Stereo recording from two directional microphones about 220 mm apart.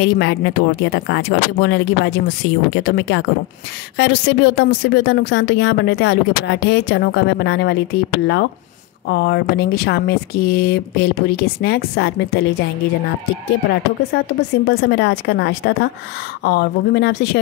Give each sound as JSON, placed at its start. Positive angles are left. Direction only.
{"t": 0.0, "sound": "a woman's voice", "side_deg": 55}
{"t": 14.2, "sound": "a woman's voice", "side_deg": 50}